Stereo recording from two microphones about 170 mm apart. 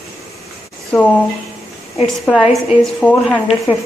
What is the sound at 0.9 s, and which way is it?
A woman's voice, centre (ahead or behind).